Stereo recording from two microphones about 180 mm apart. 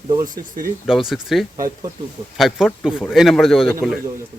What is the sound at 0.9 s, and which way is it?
Speech, centre (ahead or behind).